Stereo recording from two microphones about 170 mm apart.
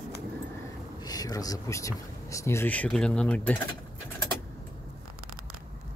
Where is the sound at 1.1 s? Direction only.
20° left (ahead or behind).